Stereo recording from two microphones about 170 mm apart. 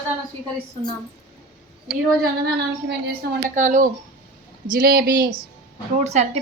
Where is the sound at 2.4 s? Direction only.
75° right (ahead or behind).